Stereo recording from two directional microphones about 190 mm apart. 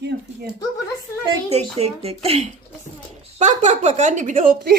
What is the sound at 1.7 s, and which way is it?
A woman's voice, 30° right (ahead or behind).